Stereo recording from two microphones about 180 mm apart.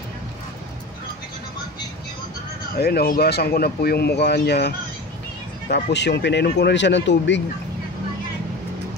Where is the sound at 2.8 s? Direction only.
60° left (ahead or behind); by 7.4 s 80° left.